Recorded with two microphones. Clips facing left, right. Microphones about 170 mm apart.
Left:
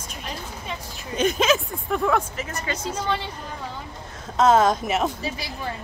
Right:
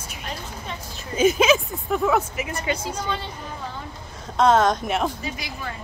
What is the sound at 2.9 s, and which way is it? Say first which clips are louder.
Speech: left 2 dB; 5° left (ahead or behind).